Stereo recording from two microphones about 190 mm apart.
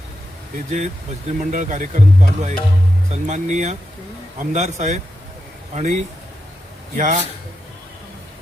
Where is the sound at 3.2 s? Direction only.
40° right (ahead or behind).